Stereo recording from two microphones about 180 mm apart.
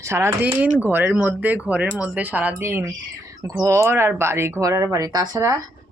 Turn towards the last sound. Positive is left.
turn(degrees=-20)  # may be behind; listen again after turning